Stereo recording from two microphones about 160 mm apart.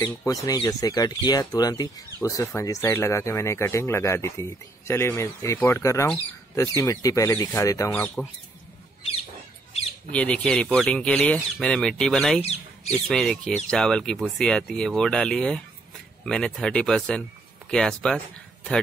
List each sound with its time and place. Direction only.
0.0 s speech: 20° left (ahead or behind)
10.1 s speech: 5° left (ahead or behind)